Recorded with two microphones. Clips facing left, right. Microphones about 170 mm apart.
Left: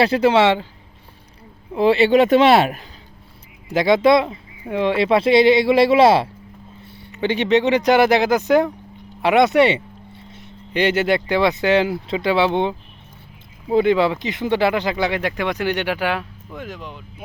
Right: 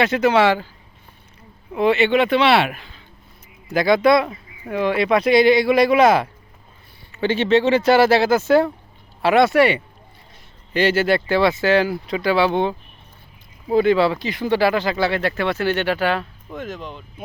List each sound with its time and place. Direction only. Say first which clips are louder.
0.0 s speech: left 1 dB; 30° left (ahead or behind)
1.7 s speech: left 2 dB; 30° left (ahead or behind)
3.7 s speech: left 1 dB; 20° left (ahead or behind)
7.1 s speech: even; 15° left (ahead or behind)